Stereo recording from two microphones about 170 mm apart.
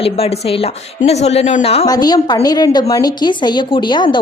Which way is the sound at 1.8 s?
25° left (ahead or behind).